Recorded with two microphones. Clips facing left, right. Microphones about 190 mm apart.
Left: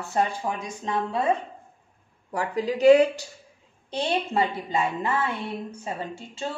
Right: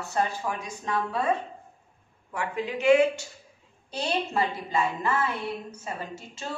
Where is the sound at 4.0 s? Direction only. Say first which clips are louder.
Left 3 dB; 25° left (ahead or behind).